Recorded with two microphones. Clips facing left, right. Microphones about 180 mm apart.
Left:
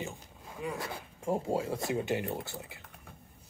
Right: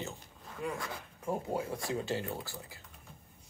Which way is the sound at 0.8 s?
25° left (ahead or behind).